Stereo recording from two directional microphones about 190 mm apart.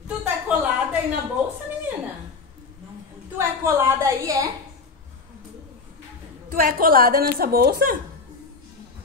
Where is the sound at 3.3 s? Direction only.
15° right (ahead or behind).